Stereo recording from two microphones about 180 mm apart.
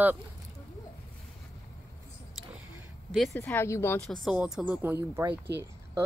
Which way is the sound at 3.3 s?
15° left (ahead or behind).